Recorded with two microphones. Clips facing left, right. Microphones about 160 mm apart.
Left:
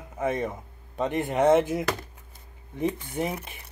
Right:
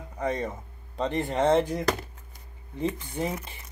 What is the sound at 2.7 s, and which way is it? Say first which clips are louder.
Speech: left 2 dB; 20° left (ahead or behind).